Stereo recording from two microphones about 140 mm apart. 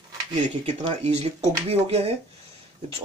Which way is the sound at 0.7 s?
50° right (ahead or behind).